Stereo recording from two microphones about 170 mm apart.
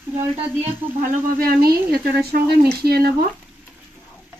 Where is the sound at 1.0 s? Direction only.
50° right (ahead or behind).